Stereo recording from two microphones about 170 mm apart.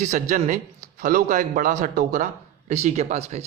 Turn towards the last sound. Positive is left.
turn(degrees=-40)  # may be behind; listen again after turning